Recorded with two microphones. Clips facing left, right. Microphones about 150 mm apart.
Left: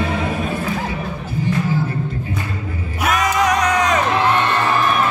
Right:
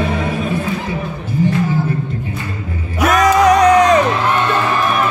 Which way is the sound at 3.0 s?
35° right (ahead or behind).